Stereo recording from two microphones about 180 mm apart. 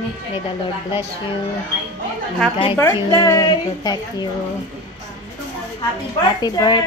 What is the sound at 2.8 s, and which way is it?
A woman's voice, 15° left (ahead or behind).